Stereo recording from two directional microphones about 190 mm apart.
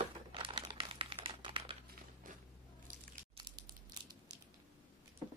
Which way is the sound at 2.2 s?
45° right (ahead or behind).